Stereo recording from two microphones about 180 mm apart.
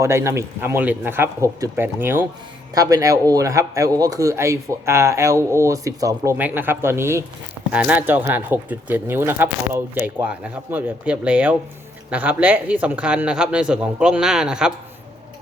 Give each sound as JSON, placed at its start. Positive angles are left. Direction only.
{"t": 0.0, "sound": "speech", "side_deg": -15}